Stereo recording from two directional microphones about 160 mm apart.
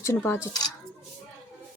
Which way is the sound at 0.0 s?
15° left (ahead or behind).